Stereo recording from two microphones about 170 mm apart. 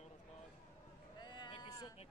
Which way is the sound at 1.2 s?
25° left (ahead or behind).